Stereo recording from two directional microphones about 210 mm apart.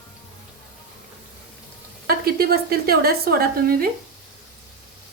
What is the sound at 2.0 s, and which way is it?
A woman's voice, 45° right (ahead or behind).